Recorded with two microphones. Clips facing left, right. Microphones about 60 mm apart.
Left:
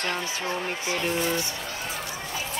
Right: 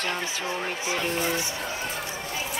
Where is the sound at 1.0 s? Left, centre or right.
Centre.